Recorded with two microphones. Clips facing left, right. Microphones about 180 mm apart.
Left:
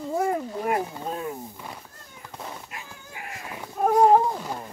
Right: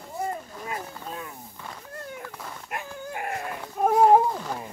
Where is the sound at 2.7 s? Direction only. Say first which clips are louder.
Right 8 dB; 55° right (ahead or behind).